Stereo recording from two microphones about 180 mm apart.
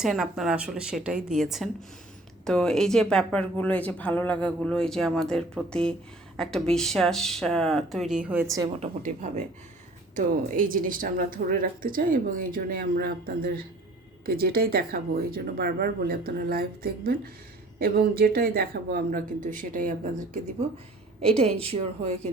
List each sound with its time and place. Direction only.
0.0 s a woman's voice: centre (ahead or behind)
8.8 s a woman's voice: 40° right (ahead or behind)
21.2 s a woman's voice: 35° right (ahead or behind)